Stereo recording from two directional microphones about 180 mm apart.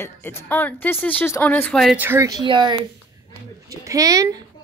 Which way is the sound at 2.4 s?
25° right (ahead or behind).